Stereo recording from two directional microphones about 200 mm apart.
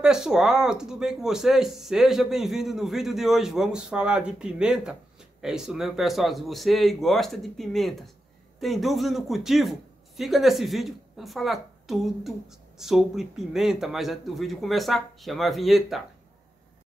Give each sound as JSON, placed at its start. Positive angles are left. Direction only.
{"t": 0.0, "sound": "a man's voice", "side_deg": -5}